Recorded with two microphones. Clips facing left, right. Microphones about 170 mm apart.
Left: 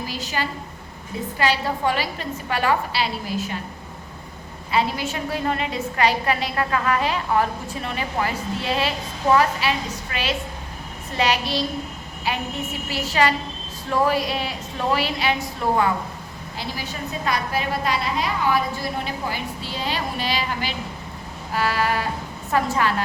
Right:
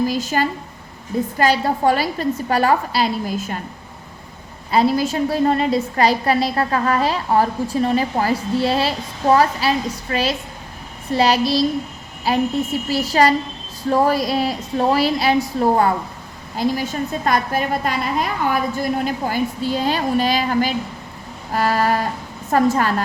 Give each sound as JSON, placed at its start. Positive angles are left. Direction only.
{"t": 0.1, "sound": "a woman's voice", "side_deg": -45}
{"t": 4.7, "sound": "a woman's voice", "side_deg": -40}
{"t": 16.6, "sound": "a woman's voice", "side_deg": -45}
{"t": 21.5, "sound": "music", "side_deg": -45}
{"t": 22.5, "sound": "a woman's voice", "side_deg": -40}